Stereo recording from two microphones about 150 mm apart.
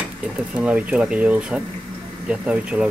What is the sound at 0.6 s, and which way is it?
Speech, 10° right (ahead or behind).